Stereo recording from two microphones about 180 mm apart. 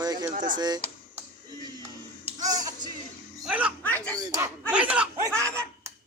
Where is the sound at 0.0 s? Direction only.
20° right (ahead or behind).